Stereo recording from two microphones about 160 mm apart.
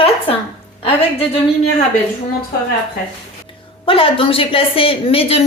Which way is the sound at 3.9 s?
35° left (ahead or behind).